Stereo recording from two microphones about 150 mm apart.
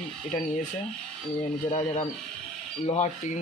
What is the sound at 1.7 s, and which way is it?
Speech, 45° left (ahead or behind).